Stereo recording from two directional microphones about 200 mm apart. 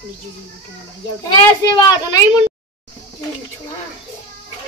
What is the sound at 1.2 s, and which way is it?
A child's voice, 20° left (ahead or behind).